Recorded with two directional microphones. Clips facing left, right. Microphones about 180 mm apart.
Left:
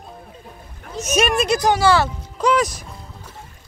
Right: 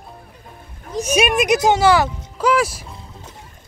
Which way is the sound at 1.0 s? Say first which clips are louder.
Right 2 dB; 10° right (ahead or behind).